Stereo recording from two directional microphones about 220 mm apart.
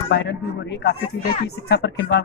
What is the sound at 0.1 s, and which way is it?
Speech, 50° left (ahead or behind).